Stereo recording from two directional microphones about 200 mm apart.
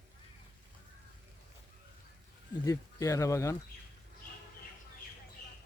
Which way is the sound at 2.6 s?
15° left (ahead or behind).